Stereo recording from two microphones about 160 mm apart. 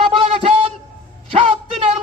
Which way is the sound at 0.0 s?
35° right (ahead or behind).